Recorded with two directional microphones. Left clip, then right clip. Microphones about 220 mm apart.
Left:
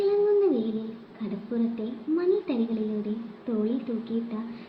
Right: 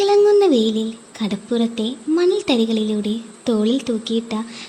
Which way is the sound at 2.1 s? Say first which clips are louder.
Right 8 dB; 50° right (ahead or behind).